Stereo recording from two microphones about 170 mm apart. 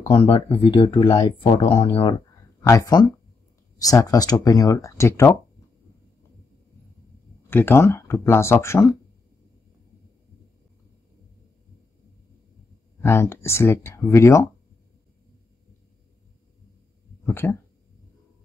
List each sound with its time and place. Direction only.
0.1 s speech: 30° left (ahead or behind)
2.6 s speech: 20° left (ahead or behind)
7.4 s speech: 10° left (ahead or behind)
13.0 s speech: 15° left (ahead or behind)
17.3 s speech: 10° left (ahead or behind)